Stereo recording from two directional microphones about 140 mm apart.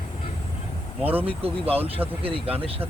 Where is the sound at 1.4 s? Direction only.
45° right (ahead or behind).